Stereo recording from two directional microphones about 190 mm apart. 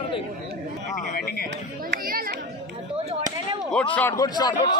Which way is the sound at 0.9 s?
50° left (ahead or behind).